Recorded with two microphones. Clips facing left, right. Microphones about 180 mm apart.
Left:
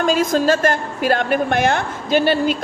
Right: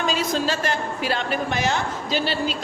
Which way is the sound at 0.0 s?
50° left (ahead or behind).